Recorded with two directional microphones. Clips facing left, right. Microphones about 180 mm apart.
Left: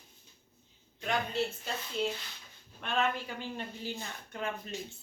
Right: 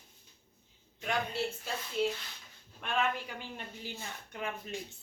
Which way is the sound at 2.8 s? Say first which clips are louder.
Left 1 dB; 10° right (ahead or behind).